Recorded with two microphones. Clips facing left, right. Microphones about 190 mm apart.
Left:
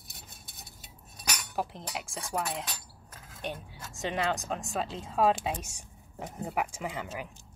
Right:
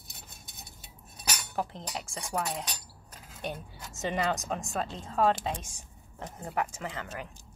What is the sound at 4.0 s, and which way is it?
Speech, centre (ahead or behind).